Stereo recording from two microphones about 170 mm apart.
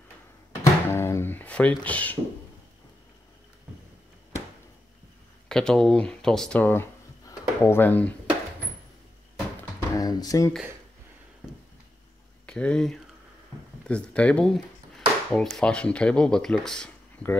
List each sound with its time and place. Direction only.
0.8 s music: 15° left (ahead or behind)
5.5 s speech: 5° left (ahead or behind)
9.6 s a sound: 20° left (ahead or behind)
12.4 s speech: 5° left (ahead or behind)
13.8 s a sound: 5° left (ahead or behind)
15.5 s speech: 5° left (ahead or behind)